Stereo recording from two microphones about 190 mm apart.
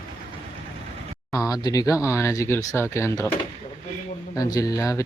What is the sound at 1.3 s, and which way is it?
Speech, 20° left (ahead or behind).